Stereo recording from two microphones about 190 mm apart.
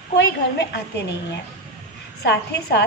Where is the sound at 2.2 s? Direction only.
60° left (ahead or behind).